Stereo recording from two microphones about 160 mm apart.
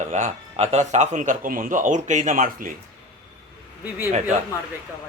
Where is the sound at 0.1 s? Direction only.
45° right (ahead or behind).